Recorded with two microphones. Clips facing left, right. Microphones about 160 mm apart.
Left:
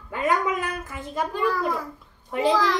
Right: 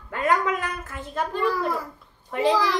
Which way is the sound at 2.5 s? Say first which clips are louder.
Left 1 dB; 10° right (ahead or behind).